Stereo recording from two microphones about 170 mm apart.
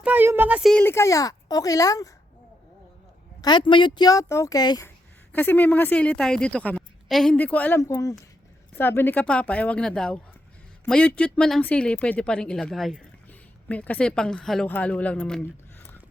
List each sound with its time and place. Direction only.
0.0 s a sound: 10° right (ahead or behind)
0.7 s a child's voice: 10° left (ahead or behind)
3.4 s a child's voice: 25° left (ahead or behind)
5.3 s speech: 10° left (ahead or behind)